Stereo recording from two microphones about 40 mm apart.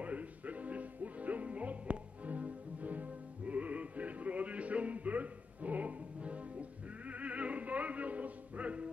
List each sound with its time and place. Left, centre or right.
0.0 s music: right
7.1 s opera: right